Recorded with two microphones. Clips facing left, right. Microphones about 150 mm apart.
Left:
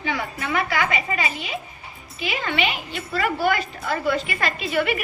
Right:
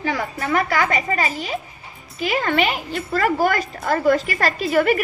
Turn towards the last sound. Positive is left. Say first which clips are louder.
# right 5 dB
turn(degrees=-45)  # may be behind; listen again after turning